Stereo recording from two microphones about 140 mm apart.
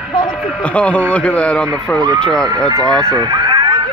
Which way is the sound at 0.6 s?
10° left (ahead or behind).